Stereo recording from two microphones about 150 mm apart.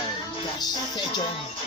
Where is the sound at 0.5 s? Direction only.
30° left (ahead or behind).